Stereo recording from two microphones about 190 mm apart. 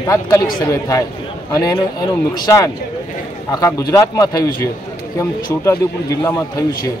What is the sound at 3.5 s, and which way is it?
Speech, 15° left (ahead or behind).